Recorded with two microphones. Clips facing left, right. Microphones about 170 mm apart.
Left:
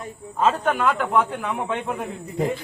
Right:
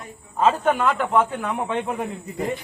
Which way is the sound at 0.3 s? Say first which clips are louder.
Right 2 dB; 5° right (ahead or behind).